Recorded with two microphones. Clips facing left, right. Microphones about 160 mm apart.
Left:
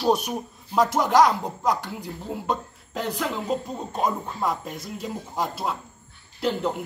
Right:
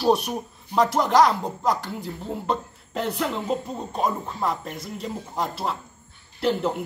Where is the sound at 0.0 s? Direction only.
Centre (ahead or behind).